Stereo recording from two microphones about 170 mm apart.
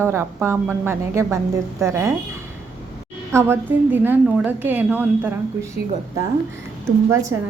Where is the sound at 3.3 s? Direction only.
15° right (ahead or behind).